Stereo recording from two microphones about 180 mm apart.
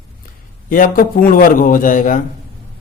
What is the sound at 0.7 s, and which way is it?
Speech, 50° left (ahead or behind).